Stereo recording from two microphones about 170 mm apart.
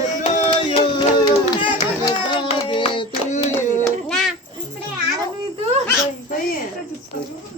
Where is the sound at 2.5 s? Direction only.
30° left (ahead or behind).